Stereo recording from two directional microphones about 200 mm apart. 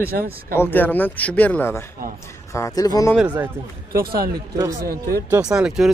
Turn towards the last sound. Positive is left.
turn(degrees=-5)  # may be behind; listen again after turning